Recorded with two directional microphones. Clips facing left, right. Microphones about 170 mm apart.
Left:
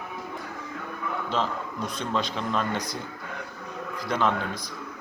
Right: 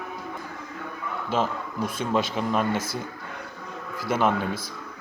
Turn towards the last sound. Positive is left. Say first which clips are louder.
# right 2 dB
turn(degrees=-10)  # may be behind; listen again after turning